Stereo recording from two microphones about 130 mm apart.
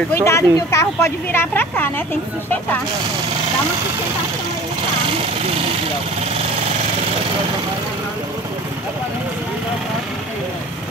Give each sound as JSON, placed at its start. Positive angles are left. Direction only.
{"t": 0.1, "sound": "speech", "side_deg": 20}